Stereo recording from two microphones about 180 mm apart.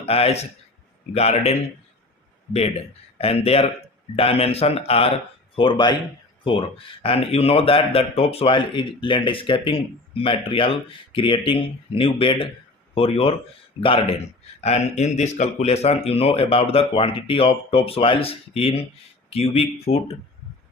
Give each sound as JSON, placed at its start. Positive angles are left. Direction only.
{"t": 0.0, "sound": "a man's voice", "side_deg": 35}